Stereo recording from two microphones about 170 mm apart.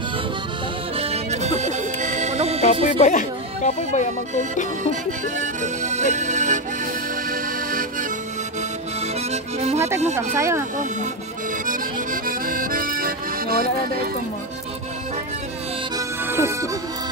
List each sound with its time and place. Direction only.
0.9 s music: 35° right (ahead or behind)
2.6 s speech: 45° left (ahead or behind)
5.2 s music: 45° right (ahead or behind)
7.2 s accordion: 55° right (ahead or behind)
9.0 s accordion: 40° right (ahead or behind)
10.3 s speech: 15° right (ahead or behind)
11.6 s accordion: 55° right (ahead or behind)
16.0 s music: 15° right (ahead or behind)